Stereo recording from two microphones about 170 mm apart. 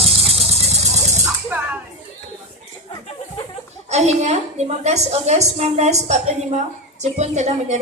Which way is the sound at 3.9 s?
40° right (ahead or behind).